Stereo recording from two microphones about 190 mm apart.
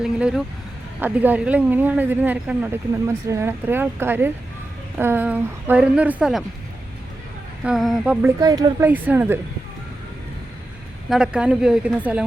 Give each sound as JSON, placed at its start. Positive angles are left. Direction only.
{"t": 0.0, "sound": "a sound", "side_deg": -5}
{"t": 0.9, "sound": "speech", "side_deg": -10}
{"t": 7.6, "sound": "a woman's voice", "side_deg": 0}
{"t": 8.4, "sound": "speech", "side_deg": -20}
{"t": 8.9, "sound": "speech", "side_deg": -10}
{"t": 11.1, "sound": "a woman's voice", "side_deg": -5}